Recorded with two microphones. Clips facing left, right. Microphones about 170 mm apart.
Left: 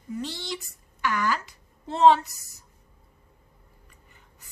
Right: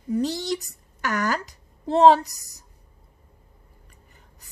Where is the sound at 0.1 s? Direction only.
40° right (ahead or behind).